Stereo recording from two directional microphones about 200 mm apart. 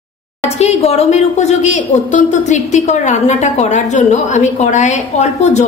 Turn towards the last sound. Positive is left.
turn(degrees=35)  # may be behind; listen again after turning